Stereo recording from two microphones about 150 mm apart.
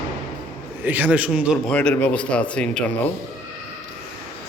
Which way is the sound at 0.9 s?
10° right (ahead or behind).